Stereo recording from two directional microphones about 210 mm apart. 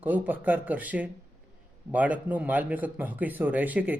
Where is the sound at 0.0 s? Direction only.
10° right (ahead or behind).